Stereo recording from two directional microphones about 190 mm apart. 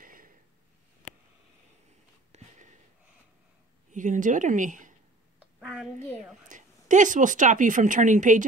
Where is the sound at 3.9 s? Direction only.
40° right (ahead or behind).